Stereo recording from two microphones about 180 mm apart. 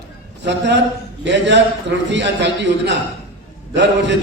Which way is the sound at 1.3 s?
75° right (ahead or behind).